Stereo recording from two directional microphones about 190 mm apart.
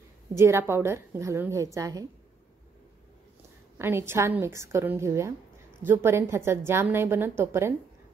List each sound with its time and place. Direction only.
0.3 s a woman's voice: 15° right (ahead or behind)
3.7 s a woman's voice: 10° right (ahead or behind)